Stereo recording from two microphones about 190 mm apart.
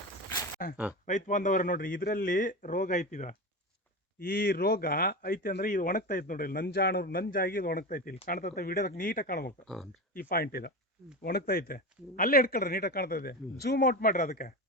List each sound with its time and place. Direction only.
0.6 s speech: 45° left (ahead or behind)
4.2 s speech: 50° left (ahead or behind)